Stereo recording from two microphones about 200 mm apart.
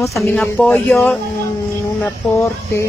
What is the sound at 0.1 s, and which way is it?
A woman's voice, centre (ahead or behind).